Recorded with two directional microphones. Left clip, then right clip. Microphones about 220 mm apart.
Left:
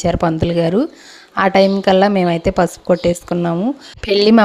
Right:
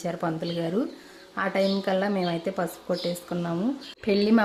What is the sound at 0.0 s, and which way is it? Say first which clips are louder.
A woman's voice: left 13 dB; 40° left (ahead or behind).